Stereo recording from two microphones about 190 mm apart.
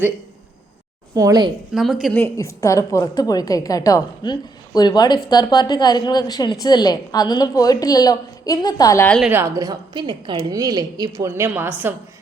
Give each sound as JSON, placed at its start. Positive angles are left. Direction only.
{"t": 1.1, "sound": "a woman's voice", "side_deg": -20}
{"t": 1.7, "sound": "a woman's voice", "side_deg": 0}
{"t": 9.0, "sound": "a woman's voice", "side_deg": 5}
{"t": 9.3, "sound": "a woman's voice", "side_deg": -15}